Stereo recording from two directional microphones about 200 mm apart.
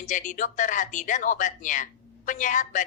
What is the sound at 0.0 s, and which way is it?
A woman's voice, 40° left (ahead or behind).